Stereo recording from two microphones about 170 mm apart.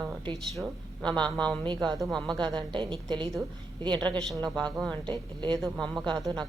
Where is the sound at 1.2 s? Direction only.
5° left (ahead or behind).